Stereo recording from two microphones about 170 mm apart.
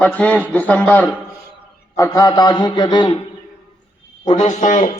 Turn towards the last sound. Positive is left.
turn(degrees=45)  # may be behind; listen again after turning